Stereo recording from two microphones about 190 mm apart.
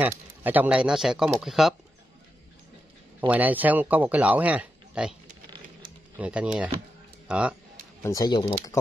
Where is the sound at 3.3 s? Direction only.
10° right (ahead or behind).